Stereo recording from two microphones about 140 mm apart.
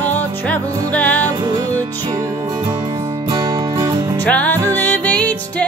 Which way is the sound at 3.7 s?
25° right (ahead or behind).